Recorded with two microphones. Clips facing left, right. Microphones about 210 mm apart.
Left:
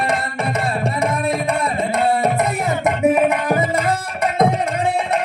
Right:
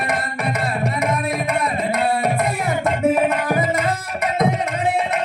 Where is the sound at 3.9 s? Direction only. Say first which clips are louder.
Left 2 dB; 30° left (ahead or behind).